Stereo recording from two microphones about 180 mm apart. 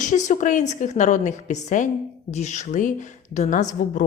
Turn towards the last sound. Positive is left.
turn(degrees=45)  # may be behind; listen again after turning